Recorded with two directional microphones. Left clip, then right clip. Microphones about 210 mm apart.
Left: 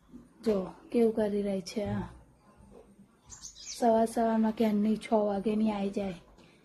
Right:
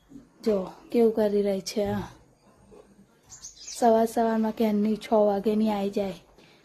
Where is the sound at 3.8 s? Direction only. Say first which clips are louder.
Right 5 dB; 20° right (ahead or behind).